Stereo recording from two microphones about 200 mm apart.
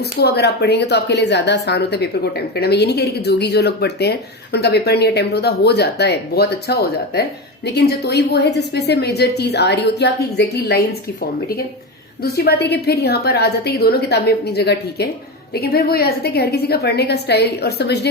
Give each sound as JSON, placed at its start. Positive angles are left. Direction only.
{"t": 0.2, "sound": "speech", "side_deg": 55}
{"t": 12.2, "sound": "a woman's voice", "side_deg": 55}